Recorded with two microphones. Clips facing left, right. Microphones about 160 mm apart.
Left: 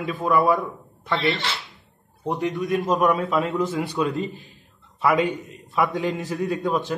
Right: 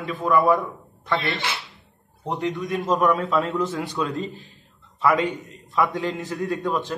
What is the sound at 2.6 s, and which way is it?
A man's voice, centre (ahead or behind).